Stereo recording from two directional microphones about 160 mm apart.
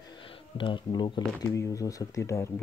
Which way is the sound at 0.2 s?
35° left (ahead or behind).